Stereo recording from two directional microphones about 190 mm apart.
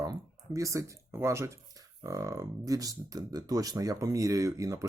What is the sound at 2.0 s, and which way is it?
Speech, 15° right (ahead or behind).